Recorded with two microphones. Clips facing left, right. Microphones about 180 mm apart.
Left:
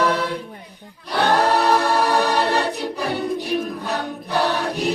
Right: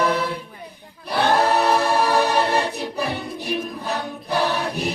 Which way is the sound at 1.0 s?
30° right (ahead or behind).